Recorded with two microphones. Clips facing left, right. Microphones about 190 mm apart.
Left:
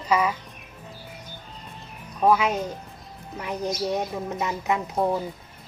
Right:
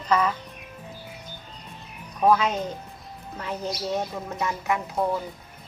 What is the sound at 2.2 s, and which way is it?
A woman's voice, 10° left (ahead or behind).